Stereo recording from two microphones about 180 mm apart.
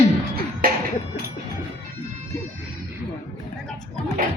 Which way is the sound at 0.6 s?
55° right (ahead or behind).